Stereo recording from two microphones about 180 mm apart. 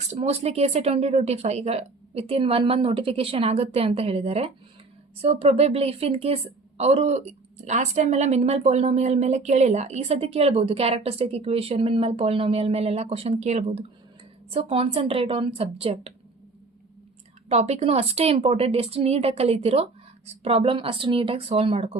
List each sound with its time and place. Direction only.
0.1 s a woman's voice: 35° right (ahead or behind)
17.5 s a woman's voice: 35° right (ahead or behind)